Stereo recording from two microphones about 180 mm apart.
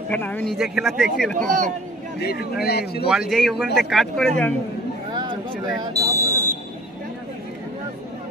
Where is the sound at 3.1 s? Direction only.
Centre (ahead or behind).